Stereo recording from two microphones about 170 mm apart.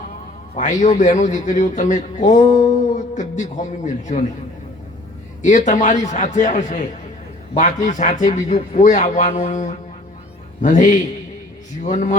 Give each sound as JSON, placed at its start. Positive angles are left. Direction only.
{"t": 0.5, "sound": "a man's voice", "side_deg": 45}
{"t": 5.4, "sound": "a man's voice", "side_deg": 45}